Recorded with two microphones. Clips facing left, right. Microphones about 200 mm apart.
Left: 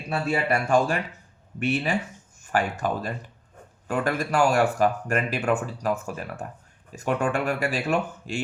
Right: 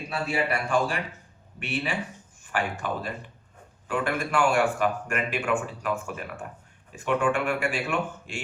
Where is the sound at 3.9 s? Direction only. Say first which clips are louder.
Left 2 dB; 40° left (ahead or behind).